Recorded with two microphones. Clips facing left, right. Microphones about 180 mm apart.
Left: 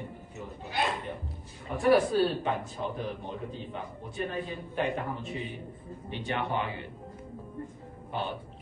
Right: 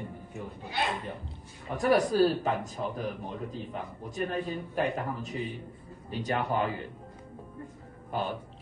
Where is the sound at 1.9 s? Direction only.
40° right (ahead or behind).